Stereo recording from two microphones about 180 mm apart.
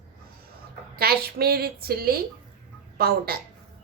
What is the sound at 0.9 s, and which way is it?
A woman's voice, 60° right (ahead or behind).